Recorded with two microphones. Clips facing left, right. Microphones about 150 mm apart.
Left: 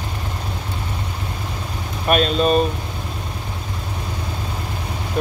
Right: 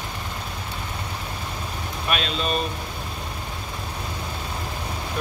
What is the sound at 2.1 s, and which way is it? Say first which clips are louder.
Speech: left 10 dB; 45° left (ahead or behind).